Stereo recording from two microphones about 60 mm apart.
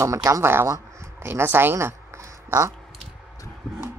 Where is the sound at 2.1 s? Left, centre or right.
Right.